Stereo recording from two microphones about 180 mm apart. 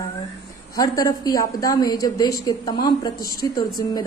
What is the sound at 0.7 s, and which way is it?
A woman's voice, 20° left (ahead or behind).